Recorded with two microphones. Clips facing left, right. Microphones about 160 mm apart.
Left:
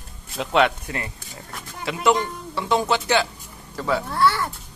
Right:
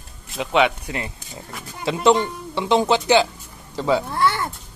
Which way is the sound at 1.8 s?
25° right (ahead or behind).